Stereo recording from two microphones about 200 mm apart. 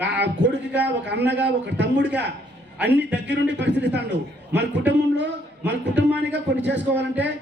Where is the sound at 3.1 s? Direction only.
60° right (ahead or behind).